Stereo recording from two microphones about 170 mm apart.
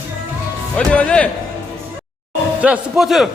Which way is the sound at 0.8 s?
5° left (ahead or behind).